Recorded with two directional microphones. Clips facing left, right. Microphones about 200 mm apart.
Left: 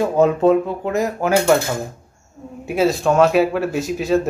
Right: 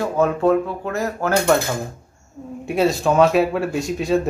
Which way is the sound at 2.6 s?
Centre (ahead or behind).